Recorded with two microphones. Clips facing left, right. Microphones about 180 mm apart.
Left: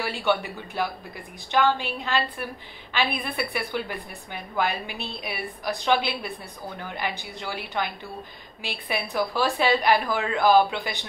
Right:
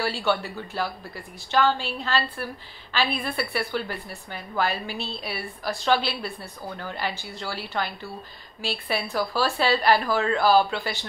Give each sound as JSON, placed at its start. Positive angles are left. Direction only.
{"t": 0.2, "sound": "a woman's voice", "side_deg": 15}
{"t": 9.1, "sound": "a woman's voice", "side_deg": 15}